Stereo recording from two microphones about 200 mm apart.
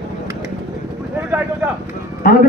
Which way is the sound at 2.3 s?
45° left (ahead or behind).